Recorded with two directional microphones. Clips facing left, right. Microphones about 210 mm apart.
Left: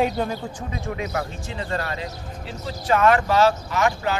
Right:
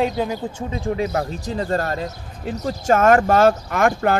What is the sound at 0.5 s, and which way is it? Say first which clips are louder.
Speech: right 6 dB; 30° right (ahead or behind).